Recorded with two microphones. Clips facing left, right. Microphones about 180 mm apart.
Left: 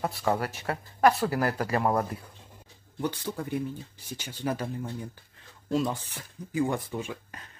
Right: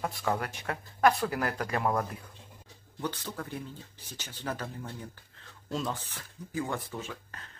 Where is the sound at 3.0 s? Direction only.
15° left (ahead or behind).